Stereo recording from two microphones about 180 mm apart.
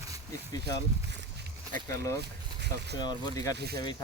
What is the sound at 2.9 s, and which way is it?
Speech, 25° left (ahead or behind).